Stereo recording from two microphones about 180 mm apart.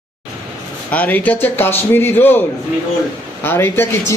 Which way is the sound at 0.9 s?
10° left (ahead or behind).